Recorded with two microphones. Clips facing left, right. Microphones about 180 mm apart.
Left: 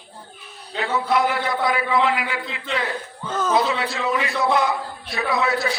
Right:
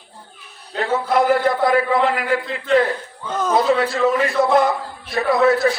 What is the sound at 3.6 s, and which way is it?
A man's voice, 50° right (ahead or behind).